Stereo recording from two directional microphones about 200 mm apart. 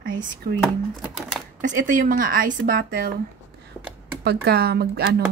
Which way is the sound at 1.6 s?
40° right (ahead or behind).